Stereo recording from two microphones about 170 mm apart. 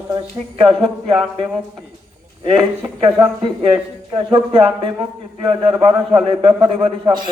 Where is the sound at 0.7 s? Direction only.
5° right (ahead or behind).